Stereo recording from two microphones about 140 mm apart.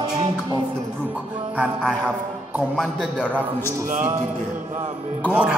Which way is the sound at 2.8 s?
Centre (ahead or behind).